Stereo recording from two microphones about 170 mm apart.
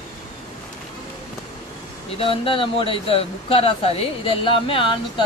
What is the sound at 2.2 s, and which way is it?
Speech, 30° left (ahead or behind).